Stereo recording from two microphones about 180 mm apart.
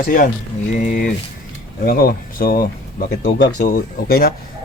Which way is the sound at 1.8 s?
55° left (ahead or behind).